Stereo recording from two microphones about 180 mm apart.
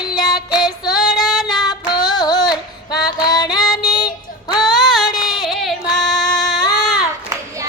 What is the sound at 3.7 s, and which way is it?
Child singing, 20° left (ahead or behind).